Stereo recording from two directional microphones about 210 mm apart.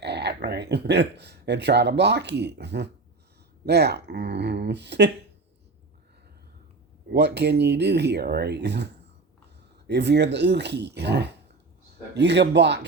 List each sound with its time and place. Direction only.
0.0 s speech: 50° right (ahead or behind)
7.1 s a man's voice: 55° right (ahead or behind)